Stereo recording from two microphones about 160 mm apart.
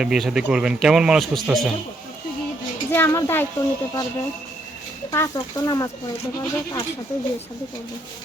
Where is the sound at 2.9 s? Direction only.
15° left (ahead or behind).